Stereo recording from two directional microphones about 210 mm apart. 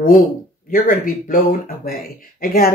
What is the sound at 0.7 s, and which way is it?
Speech, 40° left (ahead or behind).